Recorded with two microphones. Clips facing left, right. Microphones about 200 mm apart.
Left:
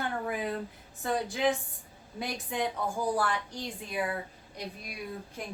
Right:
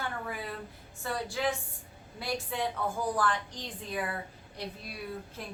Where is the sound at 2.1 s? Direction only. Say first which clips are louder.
Left 1 dB; 20° left (ahead or behind).